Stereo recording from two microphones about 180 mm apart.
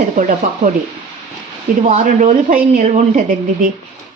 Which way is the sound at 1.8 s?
45° right (ahead or behind).